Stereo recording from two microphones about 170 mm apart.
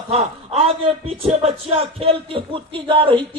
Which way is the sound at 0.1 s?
35° right (ahead or behind).